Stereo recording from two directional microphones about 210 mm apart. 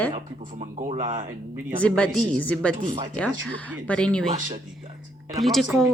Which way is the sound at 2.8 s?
25° right (ahead or behind).